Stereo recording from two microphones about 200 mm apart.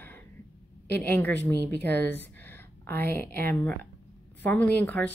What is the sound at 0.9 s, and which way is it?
A woman's voice, 10° left (ahead or behind).